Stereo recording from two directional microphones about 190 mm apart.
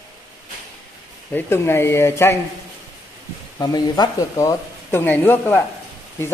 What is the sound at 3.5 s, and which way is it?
Speech, 20° left (ahead or behind).